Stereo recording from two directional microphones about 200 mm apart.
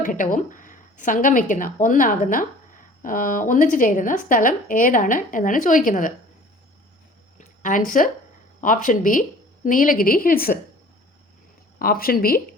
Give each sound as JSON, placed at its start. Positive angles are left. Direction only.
{"t": 0.0, "sound": "a woman's voice", "side_deg": 40}
{"t": 7.3, "sound": "a sound", "side_deg": 40}
{"t": 8.6, "sound": "a woman's voice", "side_deg": 40}
{"t": 11.8, "sound": "a woman's voice", "side_deg": 45}